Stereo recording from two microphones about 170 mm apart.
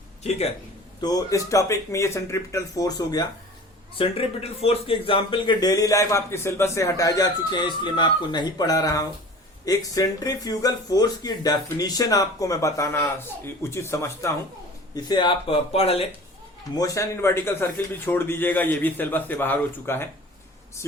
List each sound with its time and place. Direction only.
0.2 s speech: 40° left (ahead or behind)
1.0 s speech: 20° left (ahead or behind)
3.9 s speech: 35° left (ahead or behind)
16.7 s speech: 20° left (ahead or behind)